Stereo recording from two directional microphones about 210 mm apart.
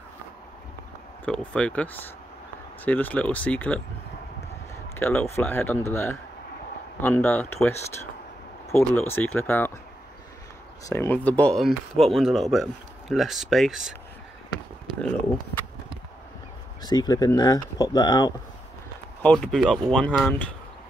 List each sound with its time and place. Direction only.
1.2 s speech: 5° left (ahead or behind)
4.9 s speech: 10° left (ahead or behind)
8.7 s speech: 10° left (ahead or behind)
10.9 s speech: 10° left (ahead or behind)
16.8 s speech: 20° left (ahead or behind)
19.2 s speech: 5° left (ahead or behind)